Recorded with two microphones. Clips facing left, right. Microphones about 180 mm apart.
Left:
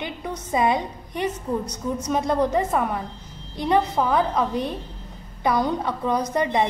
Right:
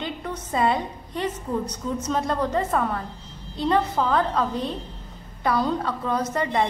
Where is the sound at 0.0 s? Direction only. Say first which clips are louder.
Even; 10° left (ahead or behind).